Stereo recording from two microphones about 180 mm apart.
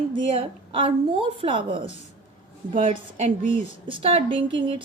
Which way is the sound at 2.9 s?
40° right (ahead or behind).